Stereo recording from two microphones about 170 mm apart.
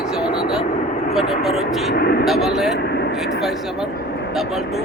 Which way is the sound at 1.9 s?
65° left (ahead or behind).